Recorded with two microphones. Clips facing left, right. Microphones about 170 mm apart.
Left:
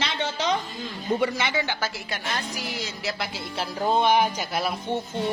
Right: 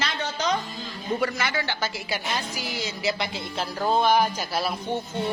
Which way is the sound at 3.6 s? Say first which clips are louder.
Even; 10° left (ahead or behind).